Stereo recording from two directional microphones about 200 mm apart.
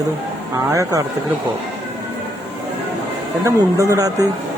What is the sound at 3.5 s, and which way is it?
Speech, 15° right (ahead or behind).